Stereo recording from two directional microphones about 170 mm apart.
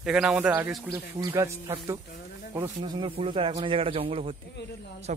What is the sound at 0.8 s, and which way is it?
Speech, 20° right (ahead or behind).